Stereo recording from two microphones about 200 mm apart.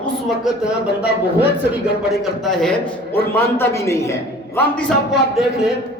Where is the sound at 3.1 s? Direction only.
10° left (ahead or behind).